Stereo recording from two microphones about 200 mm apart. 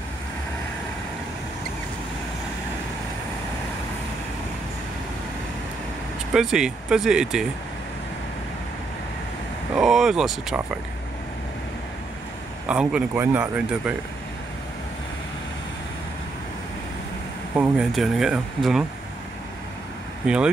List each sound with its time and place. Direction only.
6.3 s speech: 5° right (ahead or behind)
9.8 s speech: centre (ahead or behind)
12.6 s speech: 5° right (ahead or behind)
17.6 s speech: 5° right (ahead or behind)
20.2 s speech: 5° right (ahead or behind)